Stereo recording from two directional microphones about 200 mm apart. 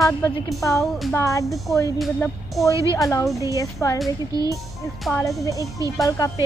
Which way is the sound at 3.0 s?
15° left (ahead or behind).